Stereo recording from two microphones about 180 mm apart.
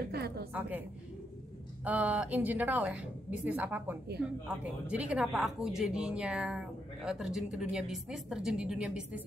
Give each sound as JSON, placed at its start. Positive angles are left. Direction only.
{"t": 0.0, "sound": "a woman's voice", "side_deg": -60}
{"t": 0.5, "sound": "a woman's voice", "side_deg": -10}
{"t": 1.9, "sound": "a woman's voice", "side_deg": -10}